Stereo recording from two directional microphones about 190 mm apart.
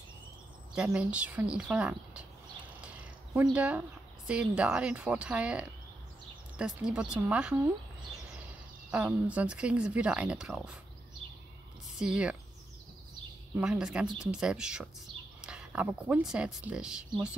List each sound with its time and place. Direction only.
0.8 s speech: 5° right (ahead or behind)
3.3 s speech: 10° right (ahead or behind)
8.9 s speech: 5° right (ahead or behind)
12.0 s speech: 5° right (ahead or behind)
13.6 s speech: 5° right (ahead or behind)